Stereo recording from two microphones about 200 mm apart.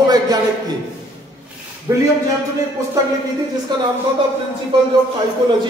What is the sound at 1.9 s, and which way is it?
Speech, 15° right (ahead or behind).